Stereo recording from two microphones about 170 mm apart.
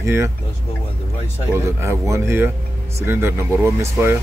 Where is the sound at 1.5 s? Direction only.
15° right (ahead or behind).